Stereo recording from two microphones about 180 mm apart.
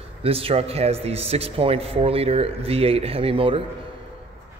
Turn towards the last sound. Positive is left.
turn(degrees=-30)  # may be behind; listen again after turning